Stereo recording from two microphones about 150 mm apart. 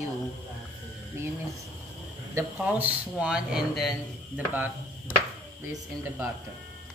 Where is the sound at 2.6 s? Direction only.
10° right (ahead or behind).